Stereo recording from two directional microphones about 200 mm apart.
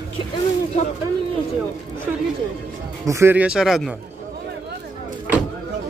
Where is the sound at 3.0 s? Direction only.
15° right (ahead or behind).